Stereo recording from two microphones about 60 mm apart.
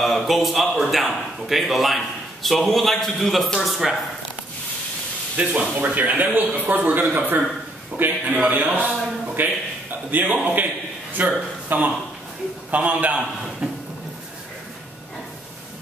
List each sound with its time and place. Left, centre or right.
0.0 s a man's voice: centre
5.4 s a man's voice: right